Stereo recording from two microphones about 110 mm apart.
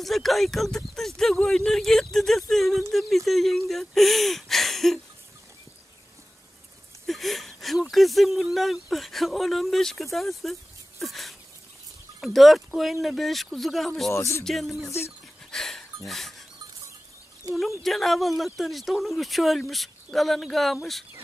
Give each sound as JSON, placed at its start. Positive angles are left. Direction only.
{"t": 0.0, "sound": "speech", "side_deg": 0}
{"t": 7.1, "sound": "a sound", "side_deg": 0}
{"t": 7.9, "sound": "speech", "side_deg": 0}
{"t": 14.1, "sound": "speech", "side_deg": 25}
{"t": 14.4, "sound": "speech", "side_deg": 0}
{"t": 15.5, "sound": "a sound", "side_deg": 5}
{"t": 16.1, "sound": "goat", "side_deg": 0}
{"t": 17.6, "sound": "speech", "side_deg": 0}